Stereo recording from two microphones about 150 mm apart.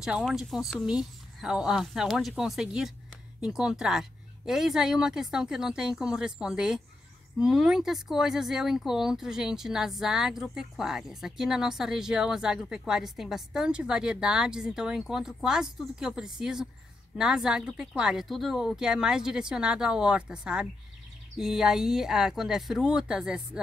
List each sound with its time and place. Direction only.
0.0 s speech: 5° right (ahead or behind)